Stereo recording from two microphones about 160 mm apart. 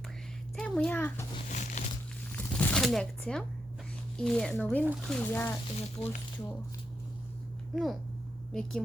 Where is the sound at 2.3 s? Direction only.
10° left (ahead or behind).